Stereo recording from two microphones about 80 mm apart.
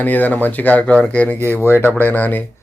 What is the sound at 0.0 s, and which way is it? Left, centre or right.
Speech, left.